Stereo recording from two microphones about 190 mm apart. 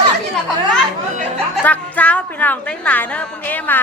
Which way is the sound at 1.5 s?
10° left (ahead or behind).